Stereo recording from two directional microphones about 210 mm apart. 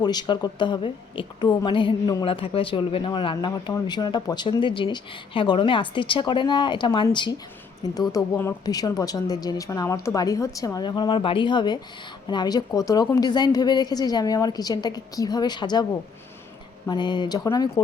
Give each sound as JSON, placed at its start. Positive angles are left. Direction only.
{"t": 0.0, "sound": "a woman's voice", "side_deg": 20}